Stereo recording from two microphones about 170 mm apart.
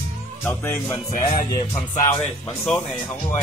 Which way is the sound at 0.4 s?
15° left (ahead or behind).